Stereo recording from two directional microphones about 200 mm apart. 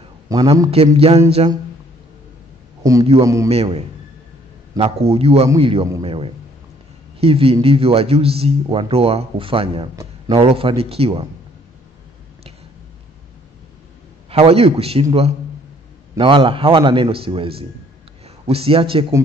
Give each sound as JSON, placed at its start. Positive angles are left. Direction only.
{"t": 0.3, "sound": "a man's voice", "side_deg": -15}
{"t": 0.7, "sound": "speech", "side_deg": -30}
{"t": 2.8, "sound": "a man's voice", "side_deg": -15}
{"t": 3.4, "sound": "a man's voice", "side_deg": -30}
{"t": 9.9, "sound": "a sound", "side_deg": -20}
{"t": 10.4, "sound": "speech", "side_deg": -30}
{"t": 14.3, "sound": "speech", "side_deg": -30}
{"t": 16.2, "sound": "speech", "side_deg": -25}